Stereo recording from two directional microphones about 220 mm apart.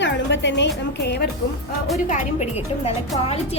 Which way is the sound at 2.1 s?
35° left (ahead or behind).